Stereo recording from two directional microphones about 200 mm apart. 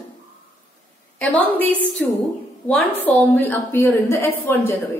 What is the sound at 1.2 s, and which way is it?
Speech, 10° left (ahead or behind).